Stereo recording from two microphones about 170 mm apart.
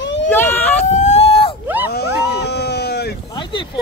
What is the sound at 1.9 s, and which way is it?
Dog, 75° left (ahead or behind).